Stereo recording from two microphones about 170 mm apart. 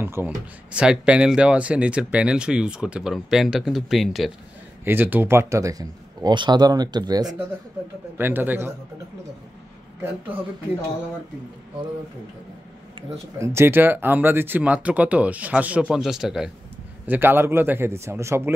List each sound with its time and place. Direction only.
0.0 s speech: 15° right (ahead or behind)
4.8 s speech: 10° right (ahead or behind)
13.4 s speech: 15° right (ahead or behind)